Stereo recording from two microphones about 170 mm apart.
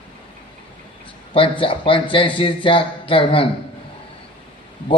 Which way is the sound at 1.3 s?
30° left (ahead or behind).